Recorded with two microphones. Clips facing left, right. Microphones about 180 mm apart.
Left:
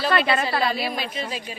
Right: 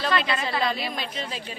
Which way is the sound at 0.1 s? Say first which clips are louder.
Left 5 dB; 60° left (ahead or behind).